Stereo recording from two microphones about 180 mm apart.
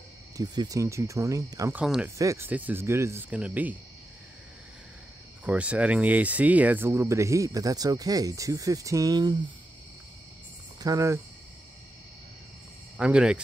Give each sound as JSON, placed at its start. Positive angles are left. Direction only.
{"t": 0.4, "sound": "speech", "side_deg": -20}
{"t": 1.8, "sound": "speech", "side_deg": -5}
{"t": 5.4, "sound": "speech", "side_deg": -5}
{"t": 10.8, "sound": "speech", "side_deg": -20}
{"t": 12.9, "sound": "speech", "side_deg": -5}